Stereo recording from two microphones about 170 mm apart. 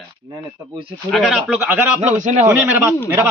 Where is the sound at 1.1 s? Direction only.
Centre (ahead or behind).